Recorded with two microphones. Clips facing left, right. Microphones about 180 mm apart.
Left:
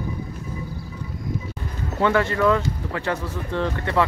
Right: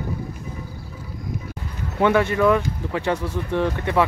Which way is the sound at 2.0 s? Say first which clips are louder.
Right 2 dB; 15° right (ahead or behind).